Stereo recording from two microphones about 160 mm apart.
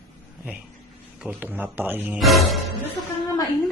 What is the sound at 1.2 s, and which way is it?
Speech, 10° right (ahead or behind).